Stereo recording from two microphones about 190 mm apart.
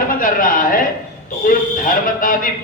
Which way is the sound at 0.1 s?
45° left (ahead or behind).